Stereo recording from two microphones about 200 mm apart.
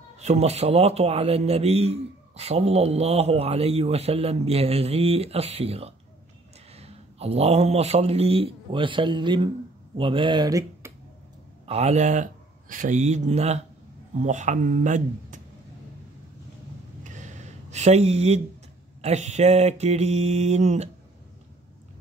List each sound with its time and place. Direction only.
0.2 s a man's voice: 35° right (ahead or behind)
11.6 s a man's voice: 30° right (ahead or behind)
17.0 s a sound: 35° right (ahead or behind)
18.9 s a man's voice: 35° right (ahead or behind)